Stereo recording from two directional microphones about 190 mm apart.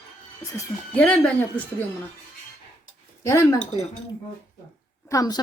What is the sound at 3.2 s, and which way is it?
Speech, 15° left (ahead or behind).